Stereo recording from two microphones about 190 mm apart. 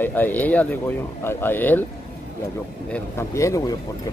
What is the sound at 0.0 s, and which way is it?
Speech, 10° left (ahead or behind).